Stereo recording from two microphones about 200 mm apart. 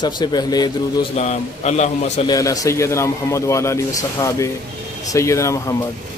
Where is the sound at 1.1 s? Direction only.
35° left (ahead or behind).